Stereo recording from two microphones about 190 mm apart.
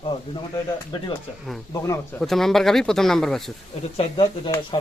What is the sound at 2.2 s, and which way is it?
Speech, centre (ahead or behind).